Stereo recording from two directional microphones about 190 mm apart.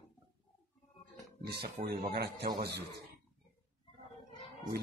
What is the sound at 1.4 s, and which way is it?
A man's voice, 55° right (ahead or behind).